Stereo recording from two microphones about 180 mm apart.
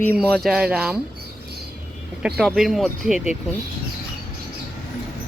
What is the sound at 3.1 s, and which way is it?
Speech, 40° left (ahead or behind).